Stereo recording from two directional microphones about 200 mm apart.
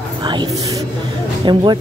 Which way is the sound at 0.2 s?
20° right (ahead or behind).